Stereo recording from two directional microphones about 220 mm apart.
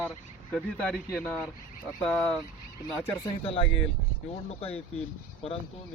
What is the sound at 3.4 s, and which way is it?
Speech, 25° left (ahead or behind).